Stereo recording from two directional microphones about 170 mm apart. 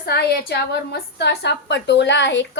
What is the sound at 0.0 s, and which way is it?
A woman's voice, 70° left (ahead or behind).